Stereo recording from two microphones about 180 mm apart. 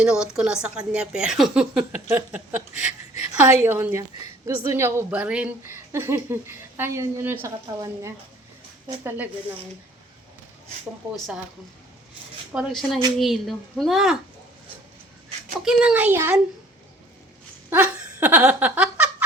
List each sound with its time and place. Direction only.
0.0 s a woman's voice: 5° right (ahead or behind)
12.5 s a woman's voice: centre (ahead or behind)
15.6 s a woman's voice: 5° right (ahead or behind)
17.7 s giggle: 10° right (ahead or behind)